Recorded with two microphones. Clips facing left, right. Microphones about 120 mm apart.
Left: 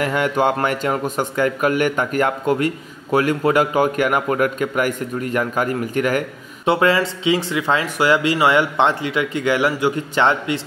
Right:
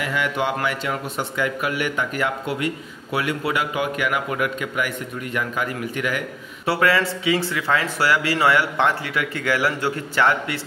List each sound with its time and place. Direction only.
0.0 s a man's voice: 45° left (ahead or behind)
6.6 s speech: 20° left (ahead or behind)